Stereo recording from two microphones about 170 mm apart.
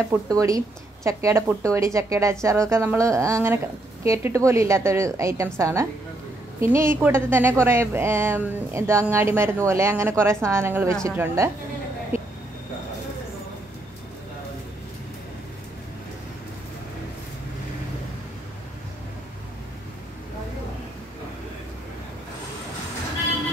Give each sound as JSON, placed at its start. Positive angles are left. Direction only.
{"t": 0.1, "sound": "a woman's voice", "side_deg": -20}